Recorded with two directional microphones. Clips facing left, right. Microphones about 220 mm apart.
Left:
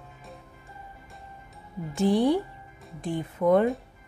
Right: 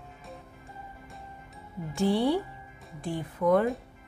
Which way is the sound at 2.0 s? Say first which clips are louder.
Left 3 dB; 20° left (ahead or behind).